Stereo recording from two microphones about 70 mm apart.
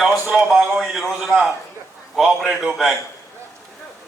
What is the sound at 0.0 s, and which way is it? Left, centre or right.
A man's voice, centre.